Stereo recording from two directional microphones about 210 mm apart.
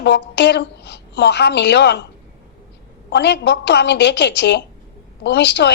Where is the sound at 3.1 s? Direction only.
55° left (ahead or behind).